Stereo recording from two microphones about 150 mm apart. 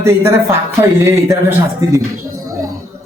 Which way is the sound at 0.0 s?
20° right (ahead or behind).